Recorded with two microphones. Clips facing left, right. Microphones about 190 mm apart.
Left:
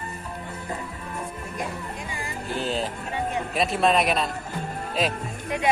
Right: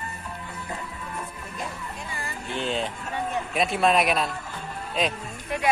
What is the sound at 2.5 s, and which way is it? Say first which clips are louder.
Music: left 1 dB; 40° left (ahead or behind).